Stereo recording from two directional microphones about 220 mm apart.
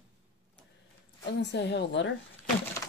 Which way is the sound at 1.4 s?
50° left (ahead or behind).